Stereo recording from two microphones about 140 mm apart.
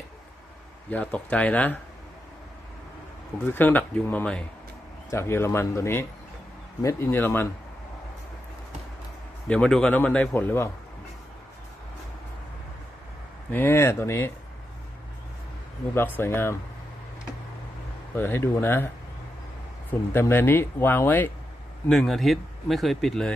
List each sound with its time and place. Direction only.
0.8 s speech: 10° left (ahead or behind)
3.4 s speech: 15° left (ahead or behind)
9.5 s speech: 5° left (ahead or behind)
13.5 s speech: 15° left (ahead or behind)
15.9 s speech: 15° left (ahead or behind)
18.1 s speech: 15° left (ahead or behind)
19.9 s speech: 15° left (ahead or behind)
21.8 s speech: 5° left (ahead or behind)